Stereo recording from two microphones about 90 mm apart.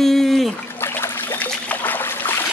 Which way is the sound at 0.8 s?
25° left (ahead or behind).